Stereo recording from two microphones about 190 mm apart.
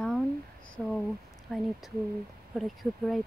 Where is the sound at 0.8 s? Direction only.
Centre (ahead or behind).